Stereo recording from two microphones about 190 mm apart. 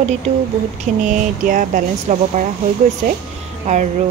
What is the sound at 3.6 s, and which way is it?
Speech, 40° right (ahead or behind).